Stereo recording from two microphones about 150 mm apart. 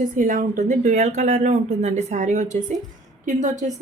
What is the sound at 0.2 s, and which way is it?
Speech, 65° right (ahead or behind).